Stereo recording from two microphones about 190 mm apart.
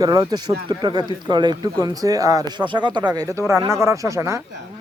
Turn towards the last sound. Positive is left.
turn(degrees=-15)  # may be behind; listen again after turning